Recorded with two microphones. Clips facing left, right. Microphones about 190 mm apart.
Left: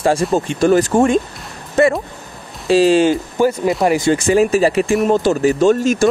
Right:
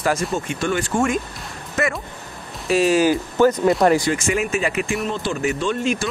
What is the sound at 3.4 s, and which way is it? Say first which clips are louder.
Speech: right 1 dB; 5° left (ahead or behind).